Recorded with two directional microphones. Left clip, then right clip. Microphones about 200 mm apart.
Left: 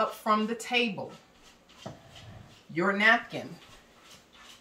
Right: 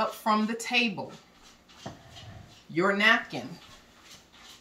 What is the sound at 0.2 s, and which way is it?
Speech, 10° left (ahead or behind).